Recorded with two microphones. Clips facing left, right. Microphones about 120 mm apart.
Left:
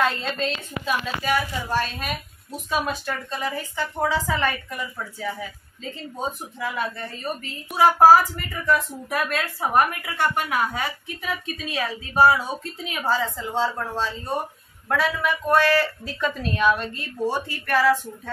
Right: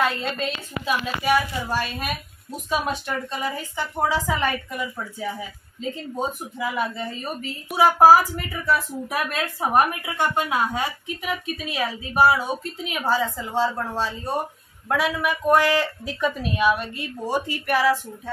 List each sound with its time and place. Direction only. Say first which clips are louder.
0.0 s speech: even; 5° right (ahead or behind)
6.1 s speech: even; 10° right (ahead or behind)